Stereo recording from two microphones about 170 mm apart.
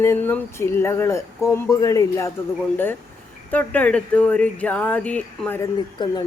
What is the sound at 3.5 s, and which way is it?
Speech, 10° left (ahead or behind).